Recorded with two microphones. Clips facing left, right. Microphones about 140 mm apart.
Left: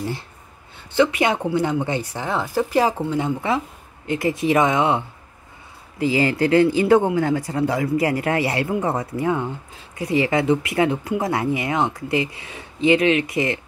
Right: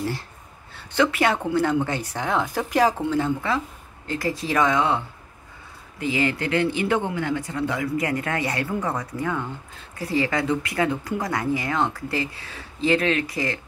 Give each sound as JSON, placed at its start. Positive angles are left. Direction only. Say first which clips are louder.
{"t": 0.9, "sound": "speech", "louder": "left 3 dB", "side_deg": 10}